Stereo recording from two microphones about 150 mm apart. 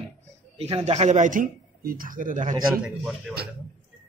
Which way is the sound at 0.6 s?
40° right (ahead or behind).